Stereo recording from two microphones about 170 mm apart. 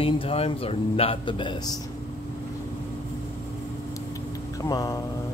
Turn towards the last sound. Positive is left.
turn(degrees=20)  # may be behind; listen again after turning